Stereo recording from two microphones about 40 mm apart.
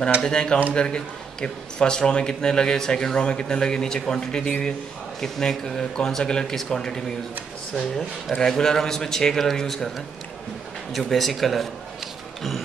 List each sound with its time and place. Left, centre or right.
0.2 s a man's voice: left
4.5 s a man's voice: left
5.2 s speech: centre
12.4 s a sound: centre